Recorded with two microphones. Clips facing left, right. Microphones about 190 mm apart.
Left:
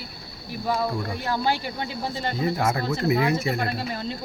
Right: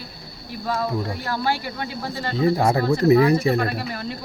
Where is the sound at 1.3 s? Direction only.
20° left (ahead or behind).